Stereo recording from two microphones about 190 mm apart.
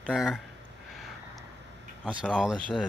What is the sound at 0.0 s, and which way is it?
Speech, centre (ahead or behind).